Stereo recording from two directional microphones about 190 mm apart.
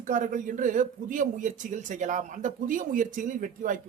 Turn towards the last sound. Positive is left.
turn(degrees=-45)  # may be behind; listen again after turning